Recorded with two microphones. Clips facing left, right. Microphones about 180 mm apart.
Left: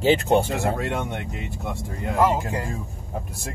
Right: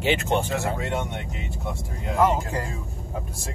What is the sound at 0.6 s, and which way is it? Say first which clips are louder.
Speech: left 3 dB; 60° left (ahead or behind).